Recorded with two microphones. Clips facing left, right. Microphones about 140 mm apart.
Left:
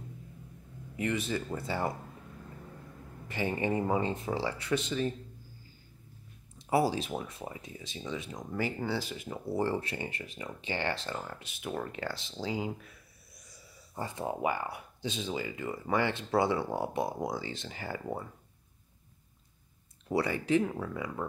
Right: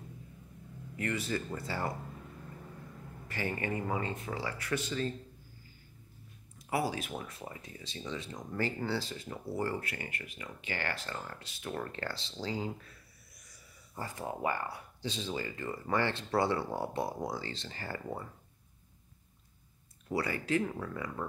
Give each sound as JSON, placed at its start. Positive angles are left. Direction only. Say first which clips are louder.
{"t": 0.9, "sound": "speech", "louder": "left 2 dB", "side_deg": 20}
{"t": 3.3, "sound": "speech", "louder": "left 4 dB", "side_deg": 20}
{"t": 6.7, "sound": "speech", "louder": "left 5 dB", "side_deg": 30}
{"t": 7.2, "sound": "speech", "louder": "left 3 dB", "side_deg": 20}
{"t": 13.9, "sound": "speech", "louder": "left 4 dB", "side_deg": 25}
{"t": 20.1, "sound": "speech", "louder": "left 4 dB", "side_deg": 20}